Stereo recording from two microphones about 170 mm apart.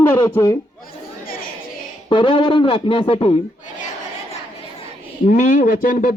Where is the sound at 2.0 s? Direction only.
30° left (ahead or behind).